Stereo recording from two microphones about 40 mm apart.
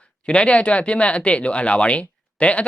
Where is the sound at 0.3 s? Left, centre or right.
Left.